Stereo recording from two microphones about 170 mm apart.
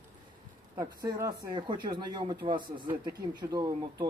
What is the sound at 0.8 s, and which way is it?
Speech, 20° right (ahead or behind).